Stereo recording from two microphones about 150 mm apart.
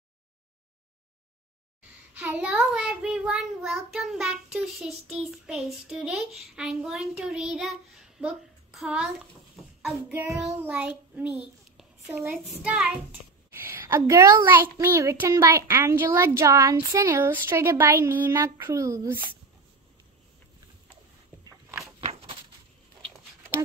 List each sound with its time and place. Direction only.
2.1 s a child's voice: 10° right (ahead or behind)
9.8 s child singing: 5° right (ahead or behind)
10.6 s a child's voice: 10° right (ahead or behind)
13.5 s a child's voice: 15° right (ahead or behind)
22.0 s a sound: 40° right (ahead or behind)